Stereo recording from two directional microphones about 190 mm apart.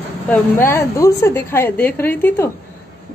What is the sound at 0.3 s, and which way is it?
A woman's voice, 10° left (ahead or behind).